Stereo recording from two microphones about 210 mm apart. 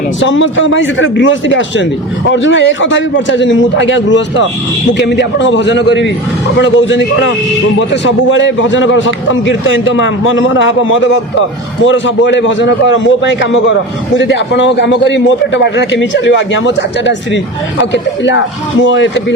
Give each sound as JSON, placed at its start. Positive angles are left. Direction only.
{"t": 0.2, "sound": "a man's voice", "side_deg": 65}